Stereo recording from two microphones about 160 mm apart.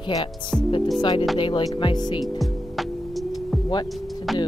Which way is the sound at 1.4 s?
30° left (ahead or behind).